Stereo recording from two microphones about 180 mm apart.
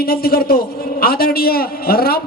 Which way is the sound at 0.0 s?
55° left (ahead or behind).